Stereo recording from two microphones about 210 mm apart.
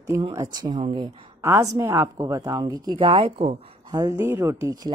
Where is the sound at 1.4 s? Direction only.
10° right (ahead or behind).